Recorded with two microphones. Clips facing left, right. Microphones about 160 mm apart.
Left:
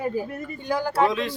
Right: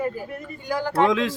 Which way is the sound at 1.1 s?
90° right.